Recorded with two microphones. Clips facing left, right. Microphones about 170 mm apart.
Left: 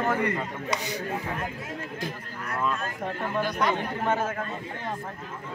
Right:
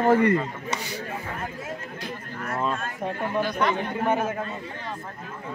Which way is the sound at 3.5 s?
10° left (ahead or behind).